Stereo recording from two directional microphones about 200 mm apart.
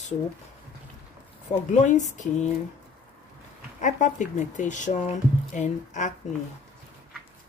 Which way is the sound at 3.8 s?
35° left (ahead or behind).